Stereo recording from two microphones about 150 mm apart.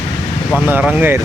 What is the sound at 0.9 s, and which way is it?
Speech, 10° right (ahead or behind).